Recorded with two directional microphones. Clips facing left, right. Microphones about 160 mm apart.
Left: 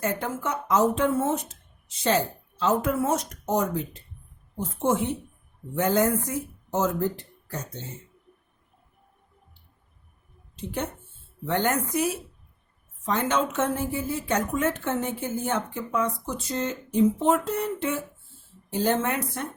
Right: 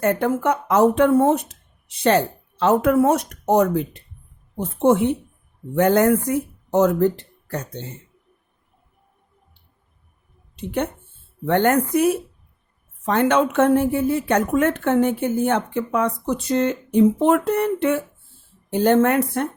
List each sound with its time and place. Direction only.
0.0 s a woman's voice: 60° right (ahead or behind)
10.5 s a woman's voice: 65° right (ahead or behind)